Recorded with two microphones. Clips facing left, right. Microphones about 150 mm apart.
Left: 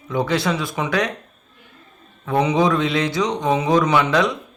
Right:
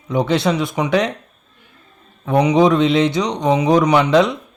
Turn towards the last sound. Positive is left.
turn(degrees=-20)  # may be behind; listen again after turning